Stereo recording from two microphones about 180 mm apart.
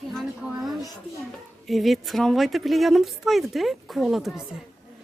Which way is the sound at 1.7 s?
Centre (ahead or behind).